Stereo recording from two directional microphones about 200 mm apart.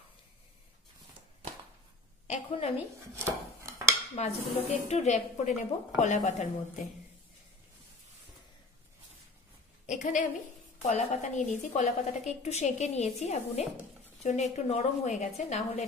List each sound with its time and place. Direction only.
2.2 s a sound: 35° left (ahead or behind)
3.2 s dishes: 15° right (ahead or behind)
4.1 s a woman's voice: 35° left (ahead or behind)
9.8 s a woman's voice: 40° left (ahead or behind)